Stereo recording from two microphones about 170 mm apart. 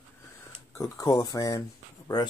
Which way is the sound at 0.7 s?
20° left (ahead or behind).